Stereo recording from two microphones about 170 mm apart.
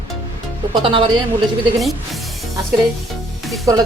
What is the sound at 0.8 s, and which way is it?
Speech, 30° right (ahead or behind).